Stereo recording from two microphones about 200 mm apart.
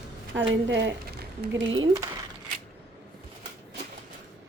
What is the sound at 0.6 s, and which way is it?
Speech, 60° right (ahead or behind).